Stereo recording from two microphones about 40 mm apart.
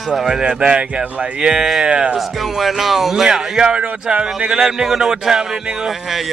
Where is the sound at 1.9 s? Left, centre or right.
Right.